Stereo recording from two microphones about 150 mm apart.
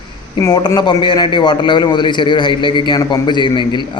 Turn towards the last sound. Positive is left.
turn(degrees=30)  # may be behind; listen again after turning